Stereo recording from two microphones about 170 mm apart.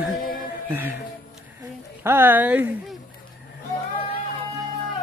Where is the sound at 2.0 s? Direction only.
15° right (ahead or behind).